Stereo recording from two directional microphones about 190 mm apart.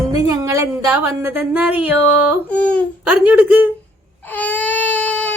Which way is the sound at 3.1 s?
10° right (ahead or behind).